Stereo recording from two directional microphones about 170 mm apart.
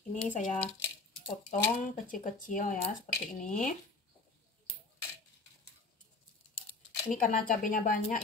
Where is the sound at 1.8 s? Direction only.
50° left (ahead or behind).